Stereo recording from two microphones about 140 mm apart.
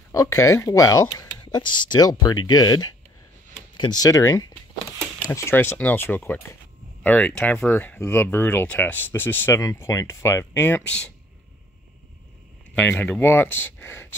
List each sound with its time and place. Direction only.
0.1 s speech: 25° left (ahead or behind); by 11.1 s 5° left (ahead or behind)
12.7 s speech: 10° left (ahead or behind)